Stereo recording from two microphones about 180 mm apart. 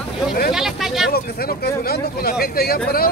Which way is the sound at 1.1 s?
55° left (ahead or behind).